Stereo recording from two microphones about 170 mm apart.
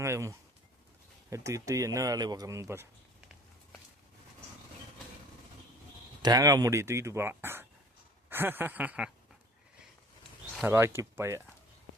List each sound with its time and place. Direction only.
0.0 s speech: 15° right (ahead or behind)
6.2 s speech: 20° right (ahead or behind)
10.7 s speech: 15° right (ahead or behind)